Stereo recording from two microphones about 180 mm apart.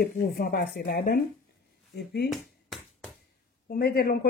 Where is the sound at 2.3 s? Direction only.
Centre (ahead or behind).